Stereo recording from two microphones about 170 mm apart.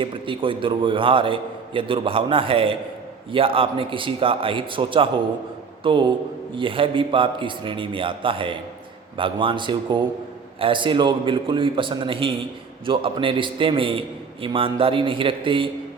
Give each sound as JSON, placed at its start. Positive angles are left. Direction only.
{"t": 0.0, "sound": "a man's voice", "side_deg": -30}